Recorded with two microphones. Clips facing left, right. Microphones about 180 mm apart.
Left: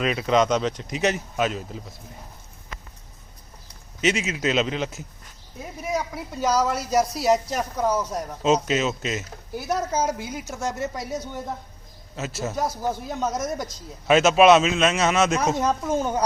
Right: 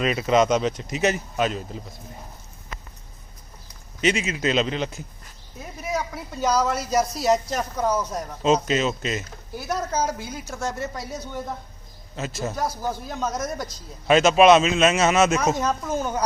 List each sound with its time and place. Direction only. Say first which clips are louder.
0.0 s speech: right 1 dB; centre (ahead or behind)
4.0 s speech: right 1 dB; centre (ahead or behind)
9.6 s speech: left 1 dB; 20° left (ahead or behind)
12.1 s speech: even; 5° left (ahead or behind)
12.5 s speech: left 3 dB; 20° left (ahead or behind)
14.1 s speech: even; centre (ahead or behind)
15.9 s speech: left 2 dB; 25° left (ahead or behind)